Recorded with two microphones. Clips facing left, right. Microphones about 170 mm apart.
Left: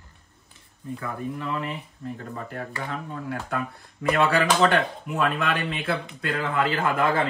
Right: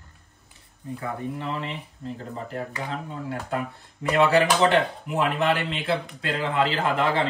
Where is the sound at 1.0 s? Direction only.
25° right (ahead or behind).